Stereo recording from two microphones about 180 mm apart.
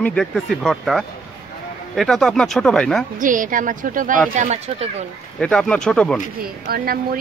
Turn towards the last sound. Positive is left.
turn(degrees=-55)  # may be behind; listen again after turning